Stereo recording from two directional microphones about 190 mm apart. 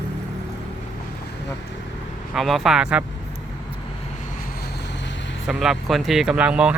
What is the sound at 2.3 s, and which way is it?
Speech, centre (ahead or behind).